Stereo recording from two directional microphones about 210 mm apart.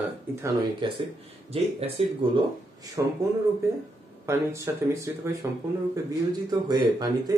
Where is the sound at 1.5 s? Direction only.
30° right (ahead or behind).